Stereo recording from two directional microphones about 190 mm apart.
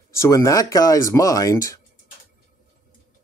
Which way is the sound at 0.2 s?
15° left (ahead or behind).